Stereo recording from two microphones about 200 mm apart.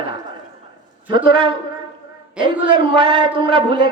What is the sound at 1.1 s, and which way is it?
A man's voice, 25° right (ahead or behind).